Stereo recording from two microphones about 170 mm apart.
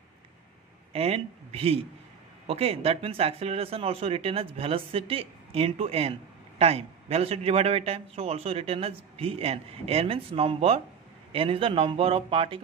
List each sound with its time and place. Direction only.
0.9 s a man's voice: 35° right (ahead or behind)